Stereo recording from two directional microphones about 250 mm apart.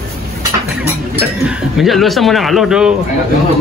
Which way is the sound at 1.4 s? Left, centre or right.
Centre.